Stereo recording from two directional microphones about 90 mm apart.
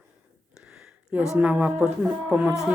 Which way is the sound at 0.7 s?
10° right (ahead or behind).